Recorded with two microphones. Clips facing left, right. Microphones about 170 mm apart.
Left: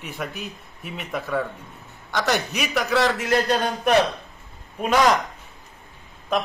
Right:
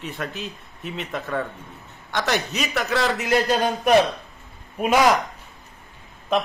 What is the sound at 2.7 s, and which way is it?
A man's voice, centre (ahead or behind).